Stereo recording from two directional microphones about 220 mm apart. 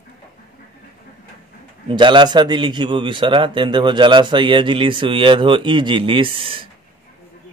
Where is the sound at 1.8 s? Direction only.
20° right (ahead or behind).